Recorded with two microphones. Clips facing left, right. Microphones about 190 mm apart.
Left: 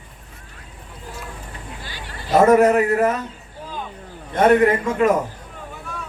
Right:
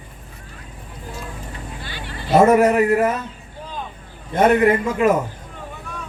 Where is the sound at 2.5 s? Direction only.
10° right (ahead or behind).